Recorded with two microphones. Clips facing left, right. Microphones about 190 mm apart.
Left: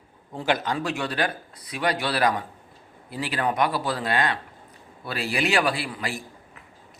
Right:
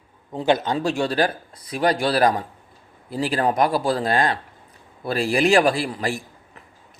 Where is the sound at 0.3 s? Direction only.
25° right (ahead or behind).